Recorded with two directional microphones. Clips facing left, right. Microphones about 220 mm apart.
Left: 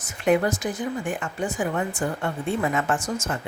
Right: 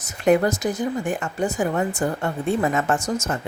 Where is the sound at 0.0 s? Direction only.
40° right (ahead or behind).